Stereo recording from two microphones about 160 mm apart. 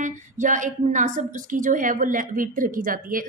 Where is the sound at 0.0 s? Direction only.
55° right (ahead or behind).